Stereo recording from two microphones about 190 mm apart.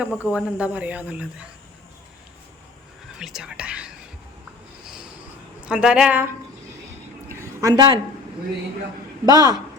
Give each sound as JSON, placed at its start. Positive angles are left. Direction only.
{"t": 0.0, "sound": "speech", "side_deg": -5}
{"t": 3.2, "sound": "speech", "side_deg": -5}
{"t": 5.6, "sound": "a woman's voice", "side_deg": -5}
{"t": 7.3, "sound": "a sound", "side_deg": -20}
{"t": 9.2, "sound": "speech", "side_deg": -20}